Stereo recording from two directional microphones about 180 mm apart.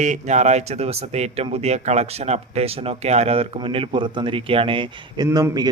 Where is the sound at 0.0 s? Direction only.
40° right (ahead or behind).